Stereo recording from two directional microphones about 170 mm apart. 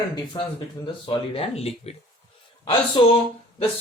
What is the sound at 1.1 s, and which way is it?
Speech, 35° left (ahead or behind).